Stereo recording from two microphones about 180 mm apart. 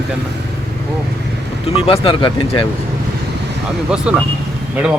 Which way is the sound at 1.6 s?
30° left (ahead or behind).